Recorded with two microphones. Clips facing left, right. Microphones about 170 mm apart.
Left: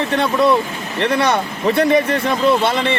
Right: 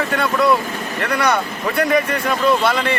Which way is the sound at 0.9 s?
25° left (ahead or behind).